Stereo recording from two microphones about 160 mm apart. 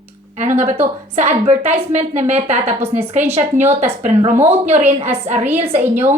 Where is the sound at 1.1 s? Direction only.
45° right (ahead or behind).